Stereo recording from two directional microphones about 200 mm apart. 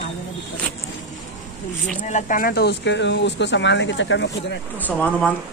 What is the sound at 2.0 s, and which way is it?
Speech, 40° left (ahead or behind).